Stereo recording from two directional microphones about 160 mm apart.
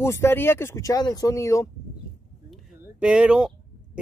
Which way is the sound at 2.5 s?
5° right (ahead or behind).